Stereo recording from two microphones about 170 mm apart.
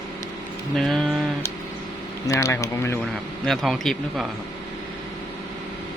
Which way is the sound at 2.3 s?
15° left (ahead or behind).